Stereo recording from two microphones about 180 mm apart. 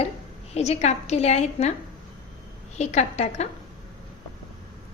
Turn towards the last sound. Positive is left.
turn(degrees=35)  # may be behind; listen again after turning